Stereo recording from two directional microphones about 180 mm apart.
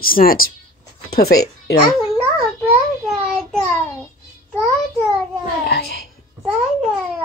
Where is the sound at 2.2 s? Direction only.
10° right (ahead or behind).